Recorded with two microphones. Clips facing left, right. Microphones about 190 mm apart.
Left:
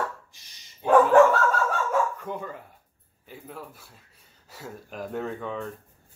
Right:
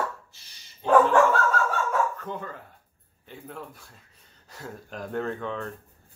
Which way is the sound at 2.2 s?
10° left (ahead or behind).